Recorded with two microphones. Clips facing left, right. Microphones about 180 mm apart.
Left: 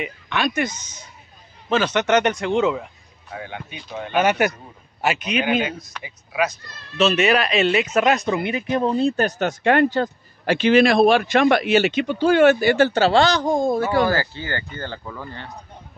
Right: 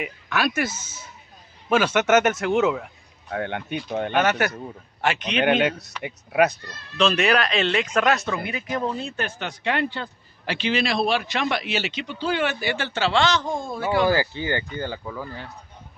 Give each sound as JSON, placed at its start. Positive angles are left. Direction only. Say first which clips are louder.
{"t": 0.0, "sound": "speech", "louder": "left 1 dB", "side_deg": -5}
{"t": 3.3, "sound": "speech", "louder": "right 6 dB", "side_deg": -60}
{"t": 4.1, "sound": "speech", "louder": "left 4 dB", "side_deg": 10}
{"t": 5.6, "sound": "speech", "louder": "right 3 dB", "side_deg": -70}
{"t": 7.0, "sound": "speech", "louder": "left 2 dB", "side_deg": 5}
{"t": 8.1, "sound": "speech", "louder": "left 4 dB", "side_deg": 20}
{"t": 14.0, "sound": "speech", "louder": "right 1 dB", "side_deg": -15}